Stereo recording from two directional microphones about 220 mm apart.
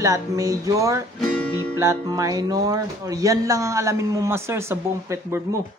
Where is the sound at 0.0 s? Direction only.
15° right (ahead or behind).